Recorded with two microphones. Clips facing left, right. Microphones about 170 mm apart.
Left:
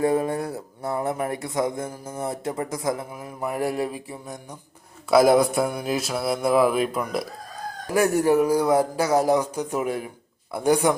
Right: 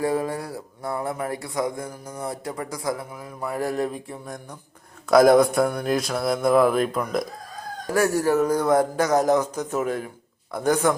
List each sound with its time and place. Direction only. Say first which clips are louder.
0.0 s speech: left 2 dB; 20° left (ahead or behind); by 4.4 s 5° left (ahead or behind)
5.1 s mantra: right 2 dB; 5° left (ahead or behind)
7.9 s a man's voice: left 1 dB; 15° left (ahead or behind)